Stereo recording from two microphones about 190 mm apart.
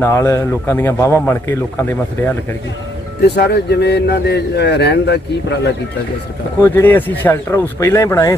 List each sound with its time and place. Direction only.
0.0 s a man's voice: 10° left (ahead or behind)
3.2 s a man's voice: 60° left (ahead or behind)
6.6 s a man's voice: 10° left (ahead or behind)